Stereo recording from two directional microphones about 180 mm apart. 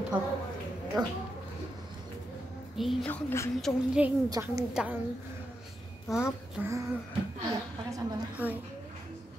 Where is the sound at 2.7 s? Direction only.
5° left (ahead or behind).